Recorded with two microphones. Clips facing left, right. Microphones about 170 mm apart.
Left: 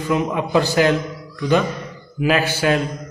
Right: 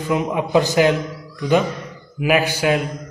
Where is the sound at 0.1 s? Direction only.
15° right (ahead or behind).